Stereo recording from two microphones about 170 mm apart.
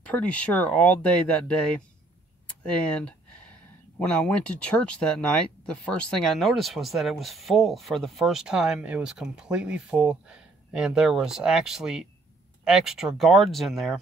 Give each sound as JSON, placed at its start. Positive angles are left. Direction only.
{"t": 0.0, "sound": "speech", "side_deg": 5}